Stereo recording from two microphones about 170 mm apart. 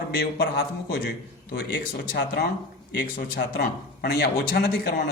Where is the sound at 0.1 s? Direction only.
65° left (ahead or behind).